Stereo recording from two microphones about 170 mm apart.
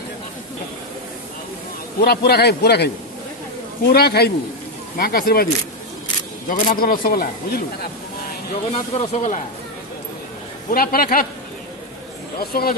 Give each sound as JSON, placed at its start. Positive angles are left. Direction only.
{"t": 2.0, "sound": "a man's voice", "side_deg": 70}
{"t": 8.7, "sound": "speech", "side_deg": 40}
{"t": 10.7, "sound": "speech", "side_deg": 60}
{"t": 12.4, "sound": "speech", "side_deg": 60}